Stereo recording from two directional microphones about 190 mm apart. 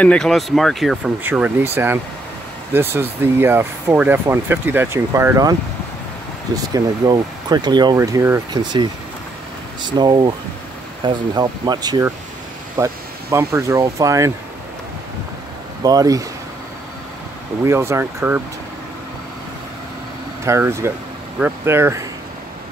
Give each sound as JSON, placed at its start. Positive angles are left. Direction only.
{"t": 0.0, "sound": "speech", "side_deg": 5}
{"t": 2.7, "sound": "speech", "side_deg": -10}
{"t": 9.8, "sound": "speech", "side_deg": -25}
{"t": 15.8, "sound": "speech", "side_deg": -20}
{"t": 17.6, "sound": "speech", "side_deg": -15}
{"t": 20.4, "sound": "speech", "side_deg": -15}